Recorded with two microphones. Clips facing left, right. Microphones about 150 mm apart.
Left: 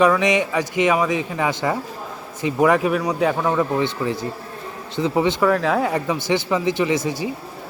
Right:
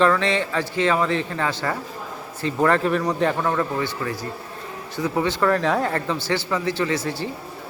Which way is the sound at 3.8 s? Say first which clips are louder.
Left 4 dB; 25° left (ahead or behind).